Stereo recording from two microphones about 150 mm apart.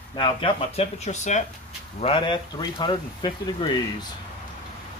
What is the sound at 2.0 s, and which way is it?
Speech, 35° left (ahead or behind).